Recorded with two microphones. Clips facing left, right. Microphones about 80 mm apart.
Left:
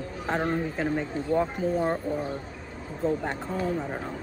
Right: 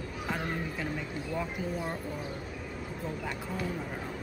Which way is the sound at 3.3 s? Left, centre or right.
Left.